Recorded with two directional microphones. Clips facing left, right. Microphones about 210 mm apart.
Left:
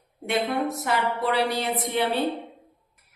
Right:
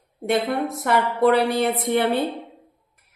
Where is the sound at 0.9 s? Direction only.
55° right (ahead or behind).